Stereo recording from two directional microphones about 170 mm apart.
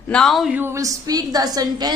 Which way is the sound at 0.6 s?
20° right (ahead or behind).